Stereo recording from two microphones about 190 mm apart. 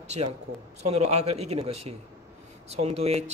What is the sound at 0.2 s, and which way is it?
A man's voice, 35° right (ahead or behind).